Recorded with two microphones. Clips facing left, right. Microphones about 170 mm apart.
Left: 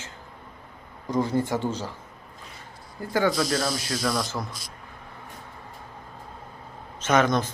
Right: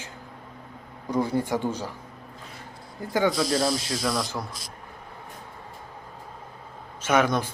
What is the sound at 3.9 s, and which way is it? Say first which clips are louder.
Speech: even; centre (ahead or behind).